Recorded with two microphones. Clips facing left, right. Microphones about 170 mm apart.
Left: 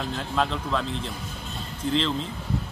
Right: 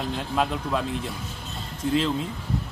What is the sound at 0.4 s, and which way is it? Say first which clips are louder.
Speech: even; 10° right (ahead or behind).